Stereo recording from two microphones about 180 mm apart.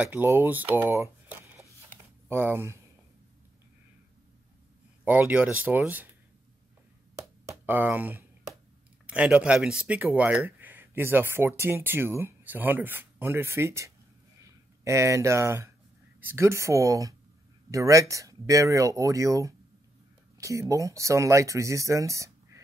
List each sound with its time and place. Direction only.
0.0 s speech: 10° right (ahead or behind)
2.2 s speech: 10° right (ahead or behind)
5.0 s speech: 10° right (ahead or behind)
7.2 s a sound: 15° right (ahead or behind)
9.0 s speech: 5° right (ahead or behind)